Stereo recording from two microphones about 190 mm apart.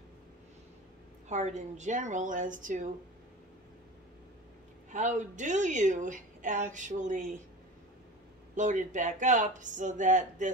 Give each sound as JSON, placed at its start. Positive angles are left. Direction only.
{"t": 1.3, "sound": "a woman's voice", "side_deg": -40}
{"t": 4.9, "sound": "a woman's voice", "side_deg": -40}
{"t": 8.5, "sound": "a woman's voice", "side_deg": -40}